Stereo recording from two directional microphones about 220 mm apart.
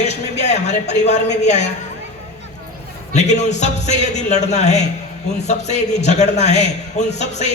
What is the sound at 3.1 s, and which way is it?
A man's voice, 30° left (ahead or behind).